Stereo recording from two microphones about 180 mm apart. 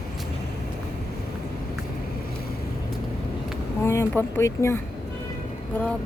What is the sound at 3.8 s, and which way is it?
Speech, 15° left (ahead or behind).